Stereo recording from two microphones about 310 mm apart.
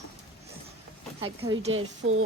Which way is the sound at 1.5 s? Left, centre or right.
Centre.